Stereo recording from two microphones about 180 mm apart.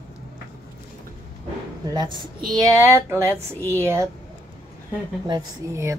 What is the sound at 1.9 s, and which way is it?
A woman's voice, 20° right (ahead or behind).